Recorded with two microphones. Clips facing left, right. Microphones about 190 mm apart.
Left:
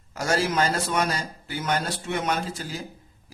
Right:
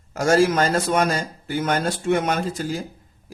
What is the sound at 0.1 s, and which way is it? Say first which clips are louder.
Speech: right 8 dB; 45° right (ahead or behind).